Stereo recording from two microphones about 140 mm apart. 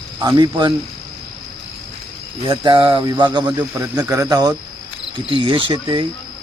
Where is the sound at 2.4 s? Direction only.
30° right (ahead or behind).